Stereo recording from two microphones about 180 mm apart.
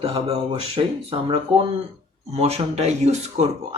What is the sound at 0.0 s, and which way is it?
Speech, 30° right (ahead or behind).